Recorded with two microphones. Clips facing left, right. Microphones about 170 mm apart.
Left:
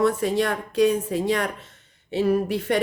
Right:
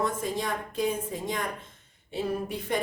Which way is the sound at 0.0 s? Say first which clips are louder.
Left 8 dB; 75° left (ahead or behind).